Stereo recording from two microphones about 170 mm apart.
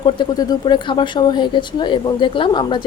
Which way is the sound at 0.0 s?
25° left (ahead or behind).